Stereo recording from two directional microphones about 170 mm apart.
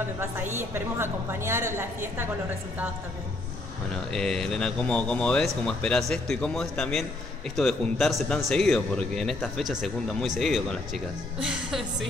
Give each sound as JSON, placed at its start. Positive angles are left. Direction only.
{"t": 0.6, "sound": "a woman's voice", "side_deg": -15}
{"t": 4.1, "sound": "speech", "side_deg": 5}